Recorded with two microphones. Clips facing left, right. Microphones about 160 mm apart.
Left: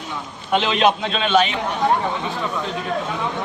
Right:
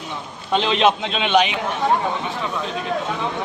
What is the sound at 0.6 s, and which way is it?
Speech, 25° right (ahead or behind).